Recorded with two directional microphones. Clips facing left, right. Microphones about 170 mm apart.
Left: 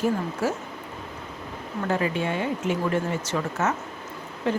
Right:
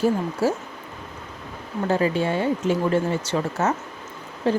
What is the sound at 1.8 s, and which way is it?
Speech, 30° right (ahead or behind).